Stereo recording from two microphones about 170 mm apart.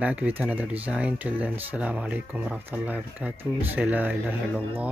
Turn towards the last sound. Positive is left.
turn(degrees=-10)  # may be behind; listen again after turning